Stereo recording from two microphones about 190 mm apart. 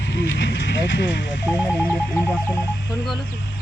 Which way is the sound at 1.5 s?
5° right (ahead or behind).